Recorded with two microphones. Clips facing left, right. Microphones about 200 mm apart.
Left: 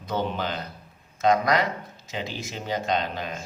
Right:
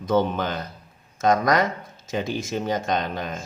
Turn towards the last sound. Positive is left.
turn(degrees=-45)  # may be behind; listen again after turning